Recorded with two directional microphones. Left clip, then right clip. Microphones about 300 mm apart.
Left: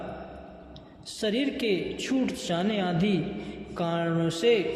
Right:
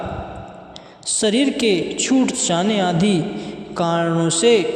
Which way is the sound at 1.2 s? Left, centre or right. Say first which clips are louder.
Right 10 dB; right.